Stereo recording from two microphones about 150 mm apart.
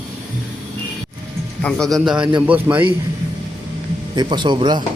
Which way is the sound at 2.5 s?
10° right (ahead or behind).